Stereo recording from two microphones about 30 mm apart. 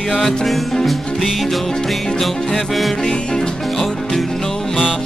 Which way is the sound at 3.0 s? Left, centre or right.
Left.